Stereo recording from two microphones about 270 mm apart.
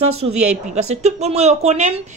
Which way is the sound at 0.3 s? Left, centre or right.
Right.